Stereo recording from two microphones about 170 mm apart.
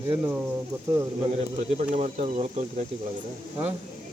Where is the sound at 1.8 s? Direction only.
40° right (ahead or behind).